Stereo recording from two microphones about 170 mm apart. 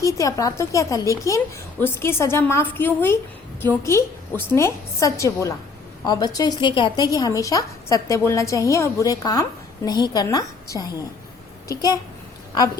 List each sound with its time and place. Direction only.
0.0 s a woman's voice: 20° left (ahead or behind)